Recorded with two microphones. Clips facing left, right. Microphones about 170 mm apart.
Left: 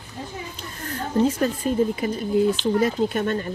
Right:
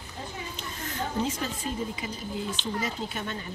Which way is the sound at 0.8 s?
55° left (ahead or behind).